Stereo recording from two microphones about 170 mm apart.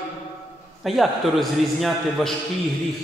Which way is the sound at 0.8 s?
Centre (ahead or behind).